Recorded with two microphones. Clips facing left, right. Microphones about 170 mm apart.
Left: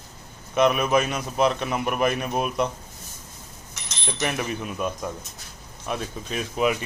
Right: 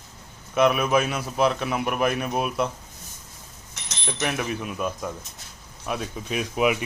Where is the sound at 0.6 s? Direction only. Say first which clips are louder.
Even; 5° right (ahead or behind).